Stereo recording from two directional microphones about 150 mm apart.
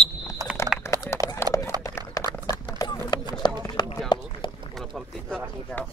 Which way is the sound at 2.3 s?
25° left (ahead or behind).